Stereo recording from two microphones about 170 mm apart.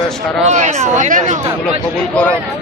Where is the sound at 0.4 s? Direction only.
40° right (ahead or behind).